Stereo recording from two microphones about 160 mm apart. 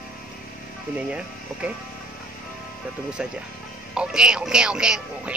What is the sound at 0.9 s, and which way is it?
Speech, 10° right (ahead or behind).